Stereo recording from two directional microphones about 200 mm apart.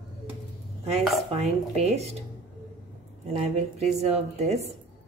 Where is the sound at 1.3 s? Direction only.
35° right (ahead or behind).